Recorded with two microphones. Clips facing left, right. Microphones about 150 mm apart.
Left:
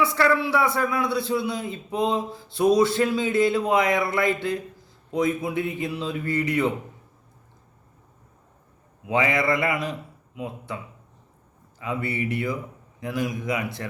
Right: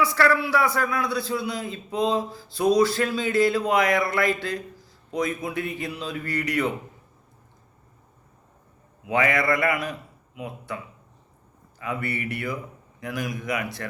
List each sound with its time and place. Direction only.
0.0 s a man's voice: 20° left (ahead or behind)
9.0 s a man's voice: 20° left (ahead or behind)
11.8 s a man's voice: 20° left (ahead or behind)